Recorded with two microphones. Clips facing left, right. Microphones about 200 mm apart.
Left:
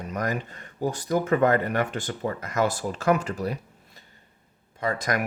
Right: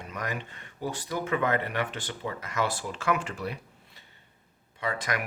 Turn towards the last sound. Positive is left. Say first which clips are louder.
# left 5 dB
turn(degrees=40)  # may be behind; listen again after turning